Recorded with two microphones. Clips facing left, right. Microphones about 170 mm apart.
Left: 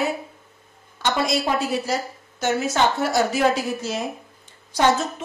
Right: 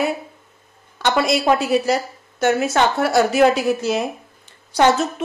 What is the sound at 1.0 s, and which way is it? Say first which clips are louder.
A woman's voice: right 4 dB; 70° right (ahead or behind).